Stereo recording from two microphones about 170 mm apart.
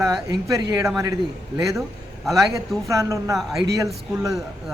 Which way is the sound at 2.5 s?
20° right (ahead or behind).